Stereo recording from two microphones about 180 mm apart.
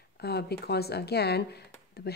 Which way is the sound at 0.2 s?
65° left (ahead or behind).